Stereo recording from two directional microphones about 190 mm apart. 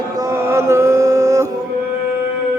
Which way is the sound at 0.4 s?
15° right (ahead or behind).